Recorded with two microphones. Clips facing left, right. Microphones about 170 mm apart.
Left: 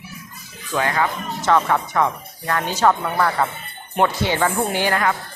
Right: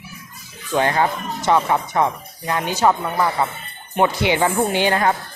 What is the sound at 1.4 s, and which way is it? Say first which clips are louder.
A woman's voice: even; 15° right (ahead or behind).